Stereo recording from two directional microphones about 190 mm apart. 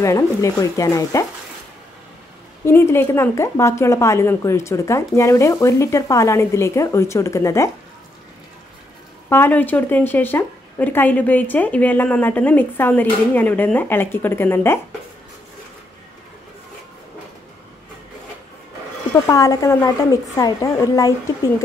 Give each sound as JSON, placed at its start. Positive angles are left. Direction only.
{"t": 0.0, "sound": "a woman's voice", "side_deg": 15}
{"t": 2.6, "sound": "a woman's voice", "side_deg": 15}
{"t": 9.3, "sound": "a woman's voice", "side_deg": 10}
{"t": 19.2, "sound": "a woman's voice", "side_deg": 20}